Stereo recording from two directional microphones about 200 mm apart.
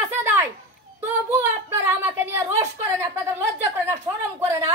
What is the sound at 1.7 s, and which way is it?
A woman's voice, 15° right (ahead or behind).